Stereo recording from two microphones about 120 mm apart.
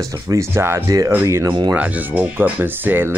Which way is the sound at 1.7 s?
15° right (ahead or behind).